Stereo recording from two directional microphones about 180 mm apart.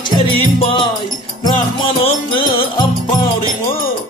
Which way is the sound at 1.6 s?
30° left (ahead or behind).